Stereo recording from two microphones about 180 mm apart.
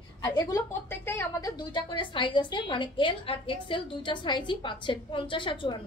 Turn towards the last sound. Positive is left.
turn(degrees=25)  # may be behind; listen again after turning